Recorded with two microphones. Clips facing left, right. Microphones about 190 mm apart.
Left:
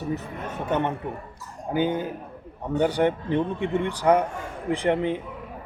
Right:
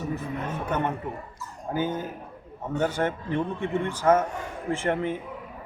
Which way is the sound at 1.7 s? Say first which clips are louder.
Left 4 dB; 15° left (ahead or behind).